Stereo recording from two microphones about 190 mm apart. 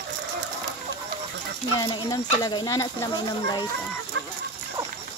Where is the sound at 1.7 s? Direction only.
20° left (ahead or behind).